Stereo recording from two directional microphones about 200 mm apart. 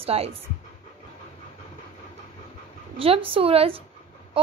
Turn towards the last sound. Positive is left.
turn(degrees=-30)  # may be behind; listen again after turning